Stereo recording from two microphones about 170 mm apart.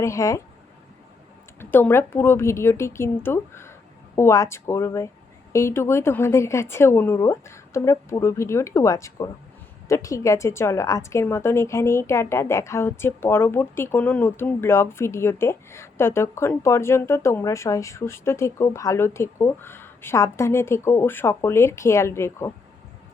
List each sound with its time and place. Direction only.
0.0 s a woman's voice: 20° left (ahead or behind)
1.5 s a woman's voice: 15° left (ahead or behind)